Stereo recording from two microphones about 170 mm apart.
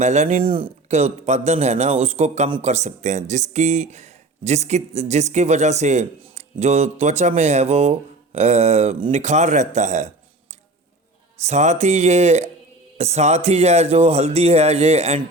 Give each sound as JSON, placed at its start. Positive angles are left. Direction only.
{"t": 0.0, "sound": "a man's voice", "side_deg": -40}
{"t": 11.4, "sound": "a man's voice", "side_deg": -45}